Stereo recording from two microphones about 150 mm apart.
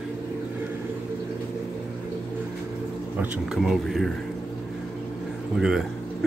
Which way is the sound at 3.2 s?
5° right (ahead or behind).